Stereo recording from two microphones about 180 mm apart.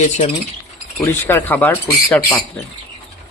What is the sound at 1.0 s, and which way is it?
Speech, 10° left (ahead or behind).